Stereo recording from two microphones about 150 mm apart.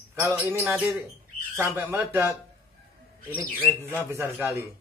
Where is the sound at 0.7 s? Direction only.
5° right (ahead or behind).